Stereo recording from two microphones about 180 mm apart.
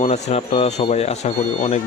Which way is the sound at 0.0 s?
35° left (ahead or behind).